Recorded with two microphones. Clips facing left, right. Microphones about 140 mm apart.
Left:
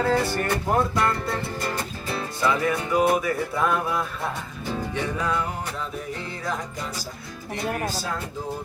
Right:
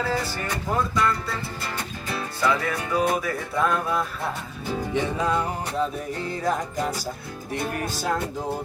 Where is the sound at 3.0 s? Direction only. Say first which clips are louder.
Left 3 dB; 5° left (ahead or behind).